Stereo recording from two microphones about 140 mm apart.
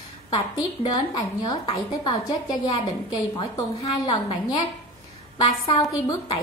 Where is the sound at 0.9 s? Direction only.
30° left (ahead or behind).